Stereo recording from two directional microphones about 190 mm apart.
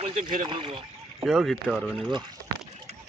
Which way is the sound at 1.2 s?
Centre (ahead or behind).